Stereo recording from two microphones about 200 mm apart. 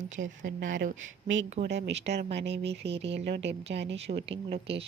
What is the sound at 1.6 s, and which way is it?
Speech, 60° right (ahead or behind).